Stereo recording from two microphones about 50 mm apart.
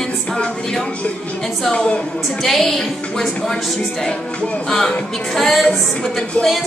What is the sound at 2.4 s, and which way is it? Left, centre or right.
A woman's voice, centre.